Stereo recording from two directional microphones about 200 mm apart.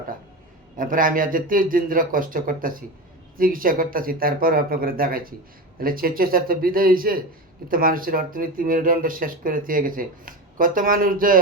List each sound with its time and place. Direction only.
0.8 s speech: 45° right (ahead or behind)